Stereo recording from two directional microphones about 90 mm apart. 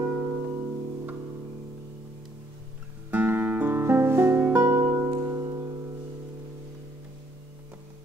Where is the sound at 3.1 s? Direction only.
20° right (ahead or behind).